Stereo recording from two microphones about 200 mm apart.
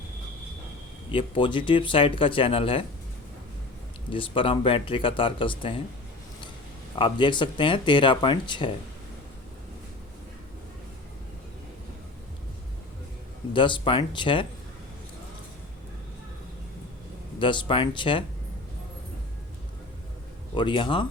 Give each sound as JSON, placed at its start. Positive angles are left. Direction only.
{"t": 1.1, "sound": "speech", "side_deg": 25}
{"t": 4.1, "sound": "speech", "side_deg": 25}
{"t": 7.0, "sound": "speech", "side_deg": 25}
{"t": 13.5, "sound": "speech", "side_deg": 25}
{"t": 17.4, "sound": "speech", "side_deg": 25}
{"t": 20.6, "sound": "speech", "side_deg": 25}